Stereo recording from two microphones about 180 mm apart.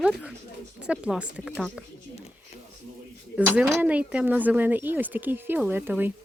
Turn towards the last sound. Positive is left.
turn(degrees=-10)  # may be behind; listen again after turning